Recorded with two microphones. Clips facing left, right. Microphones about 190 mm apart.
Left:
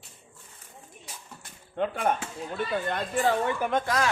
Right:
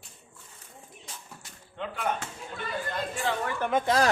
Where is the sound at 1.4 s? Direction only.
55° left (ahead or behind).